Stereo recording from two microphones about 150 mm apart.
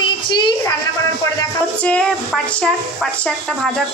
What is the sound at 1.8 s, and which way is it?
Speech, 5° left (ahead or behind).